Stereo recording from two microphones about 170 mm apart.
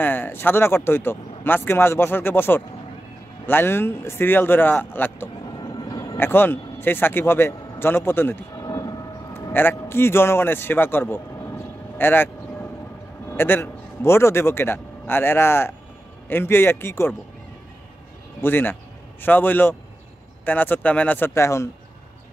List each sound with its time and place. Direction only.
0.0 s speech: 10° left (ahead or behind)
5.5 s vehicle: 25° left (ahead or behind)
13.3 s speech: 15° left (ahead or behind)
18.4 s speech: 10° left (ahead or behind)